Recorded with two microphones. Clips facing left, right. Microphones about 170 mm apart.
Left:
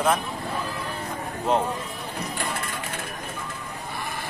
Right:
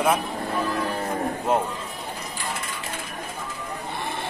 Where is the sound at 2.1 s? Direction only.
60° left (ahead or behind).